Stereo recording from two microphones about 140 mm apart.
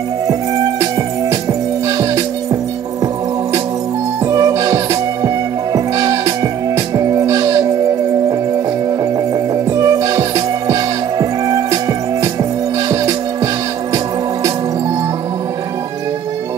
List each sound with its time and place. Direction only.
1.9 s music: 25° right (ahead or behind)
4.3 s music: 25° right (ahead or behind)
9.7 s music: 25° right (ahead or behind)